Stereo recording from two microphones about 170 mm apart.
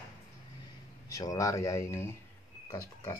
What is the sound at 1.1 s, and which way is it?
Speech, 20° left (ahead or behind).